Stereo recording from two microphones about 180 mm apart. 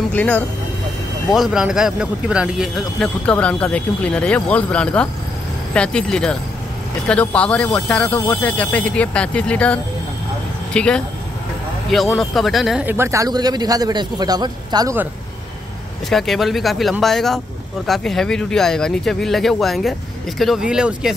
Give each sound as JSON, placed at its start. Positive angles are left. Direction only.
{"t": 0.1, "sound": "speech", "side_deg": 10}
{"t": 1.3, "sound": "speech", "side_deg": 0}
{"t": 12.2, "sound": "speech", "side_deg": 0}
{"t": 16.1, "sound": "speech", "side_deg": 0}